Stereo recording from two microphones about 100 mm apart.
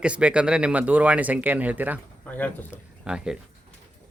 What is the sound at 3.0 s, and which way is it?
Speech, 5° right (ahead or behind).